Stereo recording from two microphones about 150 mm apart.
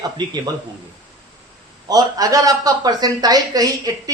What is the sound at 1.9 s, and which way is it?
Speech, 25° right (ahead or behind).